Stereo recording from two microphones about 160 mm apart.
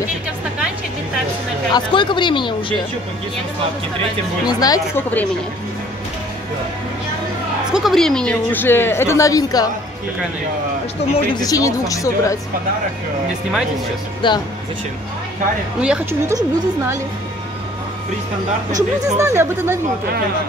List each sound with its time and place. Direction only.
1.7 s speech: 30° left (ahead or behind)
4.5 s speech: 25° left (ahead or behind)
7.7 s speech: centre (ahead or behind); by 9.7 s 25° left (ahead or behind)
11.1 s speech: 25° left (ahead or behind)
14.2 s speech: 30° left (ahead or behind)
15.8 s speech: 5° right (ahead or behind)
16.3 s a woman's voice: 20° right (ahead or behind)
18.8 s speech: 20° right (ahead or behind)